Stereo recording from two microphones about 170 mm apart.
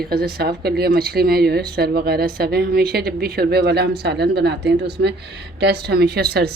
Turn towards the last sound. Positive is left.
turn(degrees=-70)  # may be behind; listen again after turning